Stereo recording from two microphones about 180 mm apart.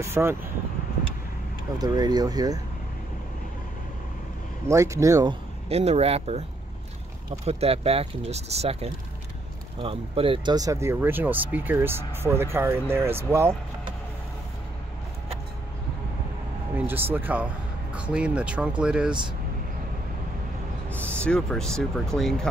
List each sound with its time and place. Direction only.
0.0 s speech: 15° right (ahead or behind)
1.8 s speech: 20° right (ahead or behind)
4.6 s speech: 15° right (ahead or behind)
5.7 s speech: 35° right (ahead or behind)
7.4 s speech: 35° right (ahead or behind); by 13.6 s 15° right (ahead or behind)
16.7 s speech: 10° right (ahead or behind)
21.0 s speech: 5° left (ahead or behind)